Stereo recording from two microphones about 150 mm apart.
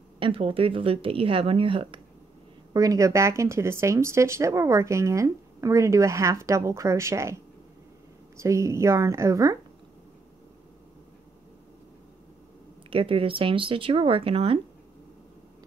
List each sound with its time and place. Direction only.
0.2 s speech: 35° right (ahead or behind)
2.7 s speech: 25° right (ahead or behind)
8.4 s speech: 20° right (ahead or behind)
12.9 s speech: 35° right (ahead or behind)